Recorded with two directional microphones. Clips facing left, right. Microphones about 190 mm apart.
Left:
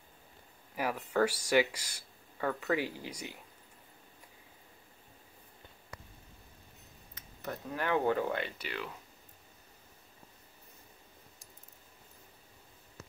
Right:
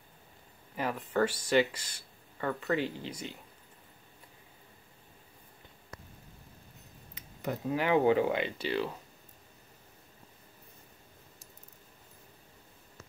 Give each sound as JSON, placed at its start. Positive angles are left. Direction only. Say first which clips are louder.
{"t": 0.7, "sound": "speech", "louder": "even", "side_deg": 10}
{"t": 7.2, "sound": "speech", "louder": "right 5 dB", "side_deg": -15}
{"t": 8.5, "sound": "speech", "louder": "right 9 dB", "side_deg": -30}